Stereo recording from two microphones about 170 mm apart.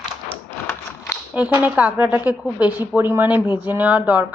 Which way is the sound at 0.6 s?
15° left (ahead or behind).